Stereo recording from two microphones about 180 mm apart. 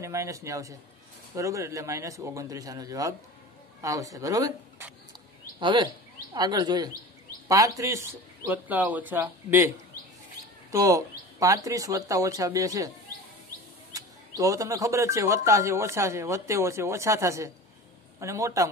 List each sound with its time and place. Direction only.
0.0 s speech: 15° right (ahead or behind)
10.7 s speech: 20° right (ahead or behind)
13.9 s speech: 20° right (ahead or behind)